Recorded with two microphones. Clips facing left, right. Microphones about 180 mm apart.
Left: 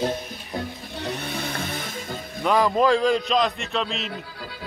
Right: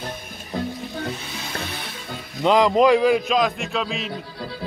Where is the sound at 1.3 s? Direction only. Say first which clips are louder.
Left 2 dB; 55° left (ahead or behind).